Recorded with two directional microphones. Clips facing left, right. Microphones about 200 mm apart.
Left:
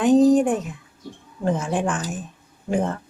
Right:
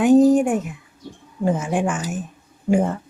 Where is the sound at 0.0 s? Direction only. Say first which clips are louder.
Right 2 dB; 10° right (ahead or behind).